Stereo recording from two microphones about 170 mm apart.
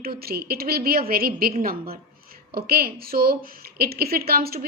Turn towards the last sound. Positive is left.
turn(degrees=-65)  # may be behind; listen again after turning